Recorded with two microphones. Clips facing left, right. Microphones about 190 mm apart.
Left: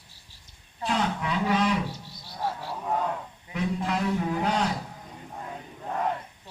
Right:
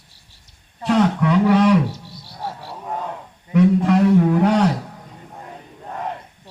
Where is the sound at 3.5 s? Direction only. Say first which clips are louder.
Right 13 dB; 65° right (ahead or behind).